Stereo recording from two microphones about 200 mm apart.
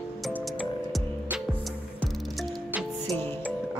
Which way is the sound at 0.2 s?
Centre (ahead or behind).